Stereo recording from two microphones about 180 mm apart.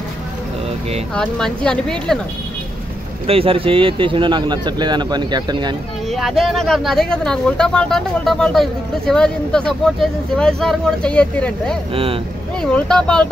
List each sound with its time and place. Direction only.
1.1 s speech: 5° left (ahead or behind)
3.3 s speech: 30° right (ahead or behind)
6.0 s speech: centre (ahead or behind)
11.9 s speech: 30° right (ahead or behind)
12.5 s speech: 5° left (ahead or behind)